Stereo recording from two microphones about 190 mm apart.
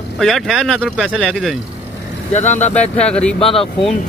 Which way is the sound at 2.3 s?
40° left (ahead or behind).